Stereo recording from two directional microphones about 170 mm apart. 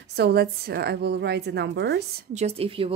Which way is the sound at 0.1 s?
70° right (ahead or behind).